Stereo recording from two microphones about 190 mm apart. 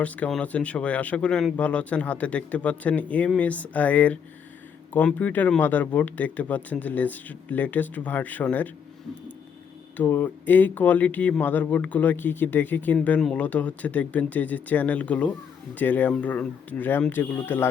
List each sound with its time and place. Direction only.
0.0 s speech: 5° left (ahead or behind)
10.0 s speech: 10° left (ahead or behind)